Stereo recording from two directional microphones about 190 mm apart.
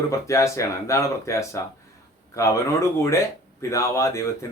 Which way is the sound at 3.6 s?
15° left (ahead or behind).